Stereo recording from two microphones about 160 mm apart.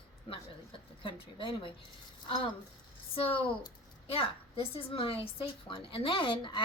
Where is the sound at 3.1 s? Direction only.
35° left (ahead or behind).